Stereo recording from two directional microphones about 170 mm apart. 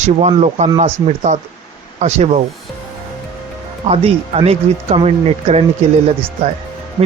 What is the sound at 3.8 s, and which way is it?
Speech, 35° right (ahead or behind).